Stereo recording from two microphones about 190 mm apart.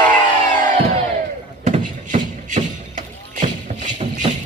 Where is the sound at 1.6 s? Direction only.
40° right (ahead or behind).